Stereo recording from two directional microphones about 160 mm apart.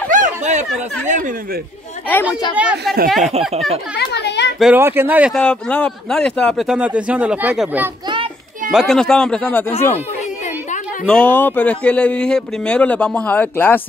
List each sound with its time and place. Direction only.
0.1 s a sound: 50° right (ahead or behind)
1.0 s speech: 50° right (ahead or behind)
2.5 s a man's voice: 10° right (ahead or behind)
3.9 s a sound: 90° left
4.7 s speech: 15° right (ahead or behind)
5.3 s a man's voice: 5° left (ahead or behind)
11.1 s a man's voice: 10° left (ahead or behind)